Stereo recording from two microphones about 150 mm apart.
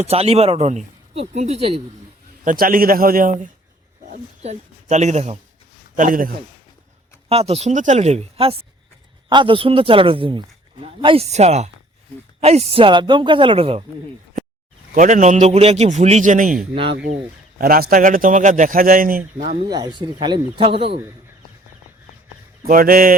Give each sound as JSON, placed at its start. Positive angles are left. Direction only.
{"t": 0.0, "sound": "speech", "side_deg": -45}
{"t": 2.4, "sound": "a man's voice", "side_deg": -65}
{"t": 4.1, "sound": "speech", "side_deg": -50}
{"t": 6.0, "sound": "a man's voice", "side_deg": -70}
{"t": 7.3, "sound": "a man's voice", "side_deg": -40}
{"t": 14.9, "sound": "speech", "side_deg": -55}
{"t": 16.7, "sound": "a man's voice", "side_deg": -40}
{"t": 17.6, "sound": "a man's voice", "side_deg": -80}
{"t": 19.6, "sound": "a man's voice", "side_deg": -25}
{"t": 22.6, "sound": "a man's voice", "side_deg": -75}